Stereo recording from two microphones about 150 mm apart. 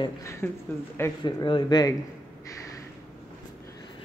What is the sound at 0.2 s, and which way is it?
Speech, 20° left (ahead or behind).